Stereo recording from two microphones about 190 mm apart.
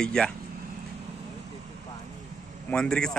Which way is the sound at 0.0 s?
5° left (ahead or behind).